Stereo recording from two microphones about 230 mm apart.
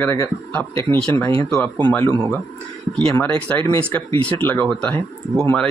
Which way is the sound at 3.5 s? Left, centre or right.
Centre.